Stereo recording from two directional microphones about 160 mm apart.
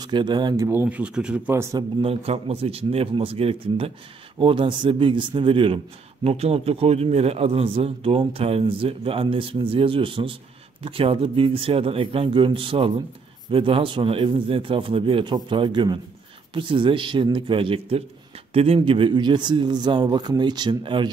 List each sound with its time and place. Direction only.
0.0 s a man's voice: 30° right (ahead or behind)
0.7 s speech: 10° right (ahead or behind)
2.0 s a man's voice: 40° right (ahead or behind)